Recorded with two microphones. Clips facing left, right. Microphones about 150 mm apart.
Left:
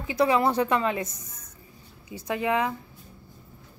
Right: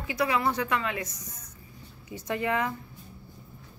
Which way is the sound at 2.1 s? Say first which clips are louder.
Left 3 dB; 15° left (ahead or behind).